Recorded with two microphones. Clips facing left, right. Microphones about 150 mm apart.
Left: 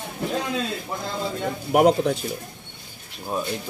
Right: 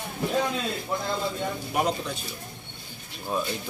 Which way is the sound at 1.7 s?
70° left (ahead or behind).